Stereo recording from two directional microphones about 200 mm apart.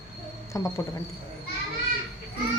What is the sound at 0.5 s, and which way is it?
Frog, 15° left (ahead or behind).